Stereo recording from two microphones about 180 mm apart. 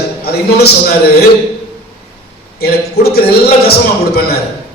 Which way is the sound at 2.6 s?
60° left (ahead or behind).